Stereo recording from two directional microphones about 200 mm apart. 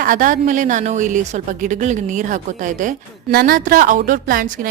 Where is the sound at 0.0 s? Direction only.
40° right (ahead or behind).